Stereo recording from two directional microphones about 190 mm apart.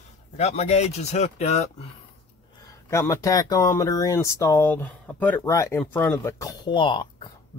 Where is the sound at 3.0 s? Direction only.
15° left (ahead or behind).